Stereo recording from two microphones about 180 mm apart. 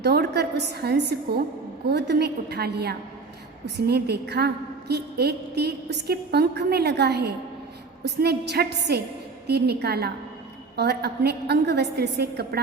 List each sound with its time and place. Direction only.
0.0 s a woman's voice: 65° right (ahead or behind)